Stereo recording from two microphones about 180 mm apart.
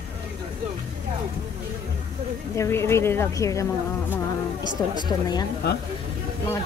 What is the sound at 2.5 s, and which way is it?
Speech, 15° left (ahead or behind).